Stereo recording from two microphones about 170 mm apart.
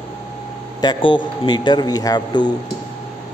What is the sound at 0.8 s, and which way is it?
A man's voice, 25° left (ahead or behind).